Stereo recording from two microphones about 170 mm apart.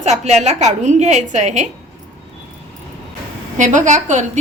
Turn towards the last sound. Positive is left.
turn(degrees=-45)  # may be behind; listen again after turning